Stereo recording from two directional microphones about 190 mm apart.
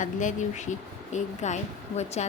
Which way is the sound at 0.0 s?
40° left (ahead or behind).